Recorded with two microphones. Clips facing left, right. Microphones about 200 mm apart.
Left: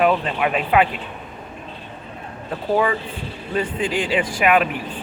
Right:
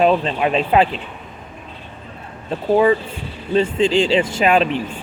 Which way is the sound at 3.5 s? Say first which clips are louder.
Right 7 dB; 25° right (ahead or behind).